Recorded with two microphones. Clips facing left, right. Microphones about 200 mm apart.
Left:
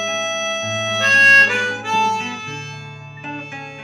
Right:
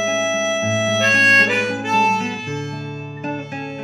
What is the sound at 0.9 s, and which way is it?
Harmonica, 20° right (ahead or behind).